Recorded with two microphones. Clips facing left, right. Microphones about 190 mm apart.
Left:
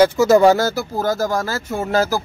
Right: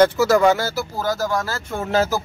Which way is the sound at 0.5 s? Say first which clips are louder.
Left 4 dB; 45° left (ahead or behind).